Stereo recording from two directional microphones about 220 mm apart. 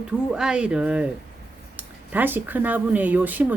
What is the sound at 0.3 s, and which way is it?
A woman's voice, 5° right (ahead or behind).